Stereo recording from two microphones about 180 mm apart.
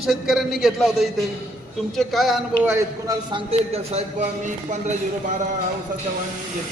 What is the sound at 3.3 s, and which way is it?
Speech, 35° right (ahead or behind).